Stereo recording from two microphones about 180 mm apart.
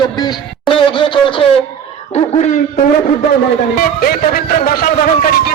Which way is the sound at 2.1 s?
40° left (ahead or behind).